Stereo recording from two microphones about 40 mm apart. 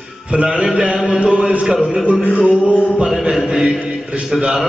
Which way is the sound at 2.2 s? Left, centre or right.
Left.